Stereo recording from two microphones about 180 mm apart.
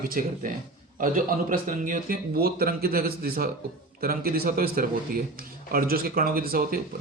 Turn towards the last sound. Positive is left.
turn(degrees=-55)  # may be behind; listen again after turning